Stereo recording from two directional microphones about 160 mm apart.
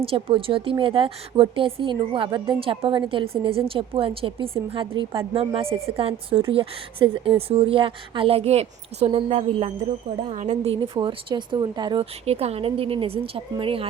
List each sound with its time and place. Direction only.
0.0 s a woman's voice: 35° right (ahead or behind)